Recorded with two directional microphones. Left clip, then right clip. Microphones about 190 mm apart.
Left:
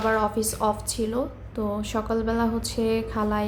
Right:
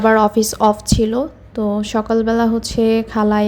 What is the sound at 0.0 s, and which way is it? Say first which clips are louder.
A woman's voice: right 10 dB; 35° right (ahead or behind).